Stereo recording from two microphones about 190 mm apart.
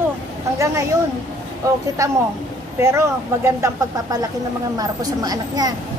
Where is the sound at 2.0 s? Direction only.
15° right (ahead or behind).